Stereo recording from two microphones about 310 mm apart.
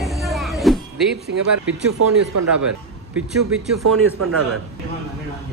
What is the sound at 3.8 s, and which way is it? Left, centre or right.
Speech, right.